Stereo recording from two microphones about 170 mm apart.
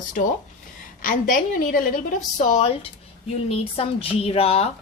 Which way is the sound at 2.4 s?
40° left (ahead or behind).